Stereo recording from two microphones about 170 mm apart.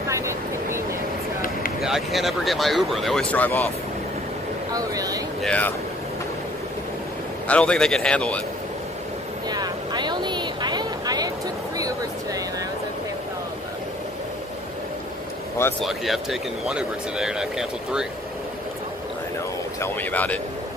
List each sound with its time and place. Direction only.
0.1 s vehicle: 15° right (ahead or behind)
1.8 s speech: centre (ahead or behind)
4.7 s speech: 20° right (ahead or behind)
5.4 s a man's voice: 10° left (ahead or behind)
7.4 s a man's voice: 5° left (ahead or behind)
9.5 s a sound: 25° right (ahead or behind)
15.8 s speech: centre (ahead or behind)
19.8 s a man's voice: 10° left (ahead or behind)